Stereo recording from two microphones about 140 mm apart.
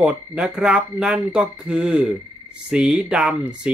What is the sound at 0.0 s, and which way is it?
Speech, 5° right (ahead or behind).